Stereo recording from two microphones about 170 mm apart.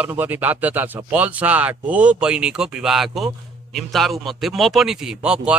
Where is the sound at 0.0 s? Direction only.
10° right (ahead or behind).